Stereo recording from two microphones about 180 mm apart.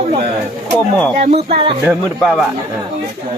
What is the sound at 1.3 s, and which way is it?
Speech, 35° right (ahead or behind).